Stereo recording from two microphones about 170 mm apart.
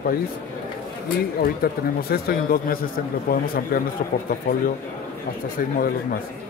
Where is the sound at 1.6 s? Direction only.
60° left (ahead or behind).